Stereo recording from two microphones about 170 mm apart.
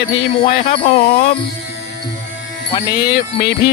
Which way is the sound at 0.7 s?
35° left (ahead or behind).